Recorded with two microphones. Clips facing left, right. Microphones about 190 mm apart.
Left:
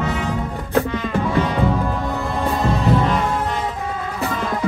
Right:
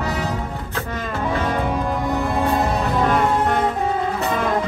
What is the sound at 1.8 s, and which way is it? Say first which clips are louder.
Music: right 2 dB; 15° right (ahead or behind).